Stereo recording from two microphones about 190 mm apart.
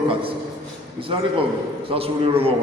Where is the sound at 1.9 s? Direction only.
30° right (ahead or behind).